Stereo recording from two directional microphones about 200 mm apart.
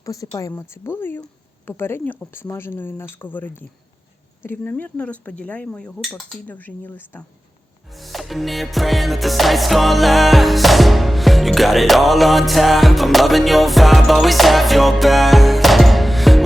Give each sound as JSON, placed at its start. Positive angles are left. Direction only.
{"t": 0.0, "sound": "speech", "side_deg": 15}
{"t": 7.9, "sound": "music", "side_deg": 0}